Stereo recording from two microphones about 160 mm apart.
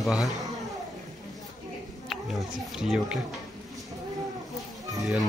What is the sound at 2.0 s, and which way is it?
A child's voice, centre (ahead or behind).